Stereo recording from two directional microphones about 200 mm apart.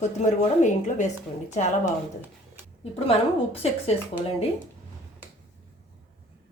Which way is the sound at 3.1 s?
30° left (ahead or behind).